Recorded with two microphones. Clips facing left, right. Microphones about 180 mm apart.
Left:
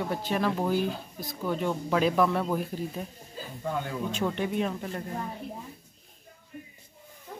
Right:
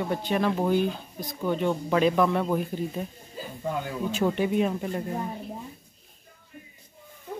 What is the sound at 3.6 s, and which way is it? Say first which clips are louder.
Speech: right 2 dB; 10° right (ahead or behind).